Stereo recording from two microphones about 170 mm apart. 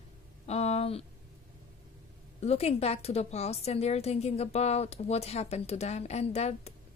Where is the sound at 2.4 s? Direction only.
40° left (ahead or behind).